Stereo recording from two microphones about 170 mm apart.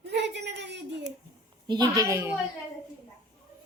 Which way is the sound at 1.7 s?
20° right (ahead or behind).